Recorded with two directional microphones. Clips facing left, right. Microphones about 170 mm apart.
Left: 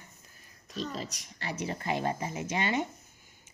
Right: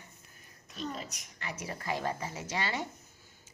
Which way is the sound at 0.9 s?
35° left (ahead or behind).